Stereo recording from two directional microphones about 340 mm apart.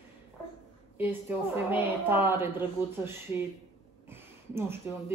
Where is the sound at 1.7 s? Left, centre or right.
Centre.